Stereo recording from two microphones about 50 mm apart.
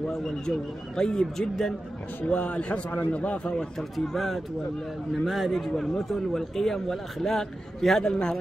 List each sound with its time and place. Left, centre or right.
0.2 s a man's voice: centre
2.2 s a man's voice: left
3.9 s a man's voice: centre
8.0 s a man's voice: centre